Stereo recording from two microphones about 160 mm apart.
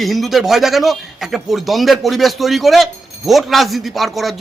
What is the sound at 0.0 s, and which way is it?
Speech, centre (ahead or behind).